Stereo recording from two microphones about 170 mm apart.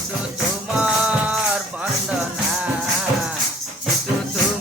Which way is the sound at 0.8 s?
10° right (ahead or behind).